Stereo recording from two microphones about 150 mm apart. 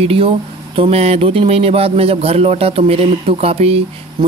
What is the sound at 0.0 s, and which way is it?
Speech, 40° right (ahead or behind).